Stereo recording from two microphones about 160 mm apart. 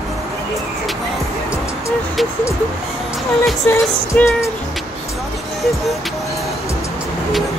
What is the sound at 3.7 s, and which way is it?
Music, 15° left (ahead or behind).